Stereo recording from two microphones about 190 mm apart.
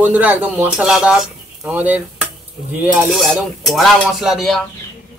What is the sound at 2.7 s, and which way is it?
Cutlery, 10° right (ahead or behind).